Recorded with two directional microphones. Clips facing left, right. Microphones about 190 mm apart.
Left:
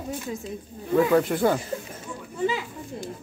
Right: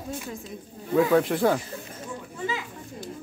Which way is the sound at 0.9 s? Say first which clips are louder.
Left 1 dB; centre (ahead or behind).